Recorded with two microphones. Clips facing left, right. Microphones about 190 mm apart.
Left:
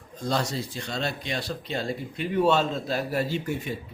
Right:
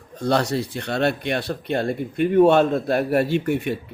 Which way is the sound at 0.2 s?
65° right (ahead or behind).